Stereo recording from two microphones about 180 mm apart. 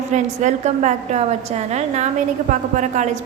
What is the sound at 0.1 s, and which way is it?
A woman's voice, 40° right (ahead or behind).